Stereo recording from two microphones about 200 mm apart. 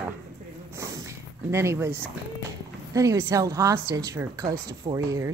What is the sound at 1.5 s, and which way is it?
Speech, 15° right (ahead or behind).